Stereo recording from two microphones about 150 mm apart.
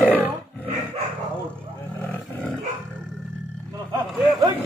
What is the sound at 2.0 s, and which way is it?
Roar, 10° left (ahead or behind).